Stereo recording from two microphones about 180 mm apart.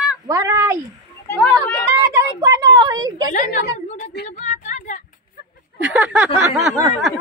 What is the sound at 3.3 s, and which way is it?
Speech, 45° left (ahead or behind).